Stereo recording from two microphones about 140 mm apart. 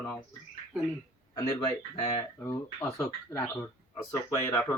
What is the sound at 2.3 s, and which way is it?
Speech, 20° left (ahead or behind).